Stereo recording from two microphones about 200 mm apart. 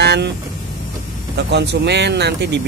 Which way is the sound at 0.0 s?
55° right (ahead or behind).